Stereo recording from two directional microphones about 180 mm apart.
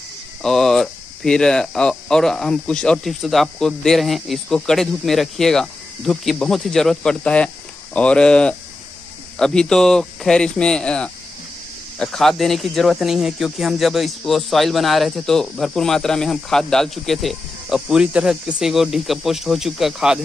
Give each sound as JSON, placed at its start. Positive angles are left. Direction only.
{"t": 0.4, "sound": "speech", "side_deg": 0}